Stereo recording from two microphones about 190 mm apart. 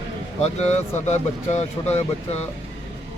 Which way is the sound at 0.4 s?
35° left (ahead or behind).